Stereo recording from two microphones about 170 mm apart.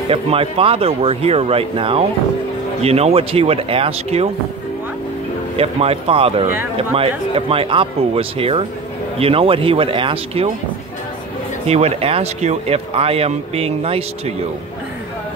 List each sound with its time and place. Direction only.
0.1 s speech: 35° right (ahead or behind)
5.6 s speech: 35° right (ahead or behind)
11.6 s speech: 40° right (ahead or behind)